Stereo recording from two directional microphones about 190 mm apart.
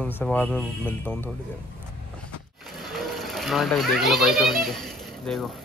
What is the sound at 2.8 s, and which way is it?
Children playing, centre (ahead or behind).